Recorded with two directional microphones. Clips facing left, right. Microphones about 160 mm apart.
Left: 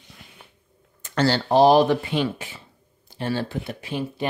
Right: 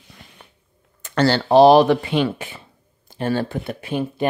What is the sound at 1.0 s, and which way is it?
Speech, 65° right (ahead or behind).